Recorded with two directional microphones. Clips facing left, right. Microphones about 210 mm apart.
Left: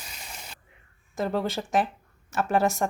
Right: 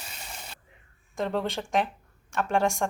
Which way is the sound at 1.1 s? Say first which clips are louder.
Left 1 dB; 5° left (ahead or behind).